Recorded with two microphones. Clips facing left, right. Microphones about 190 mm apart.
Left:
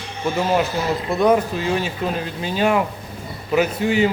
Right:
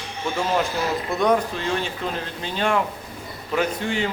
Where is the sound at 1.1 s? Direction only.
5° left (ahead or behind).